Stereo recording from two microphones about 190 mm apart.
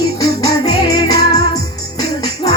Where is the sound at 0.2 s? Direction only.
20° left (ahead or behind).